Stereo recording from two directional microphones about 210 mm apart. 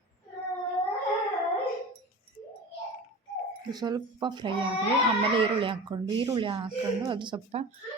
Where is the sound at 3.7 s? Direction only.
20° right (ahead or behind).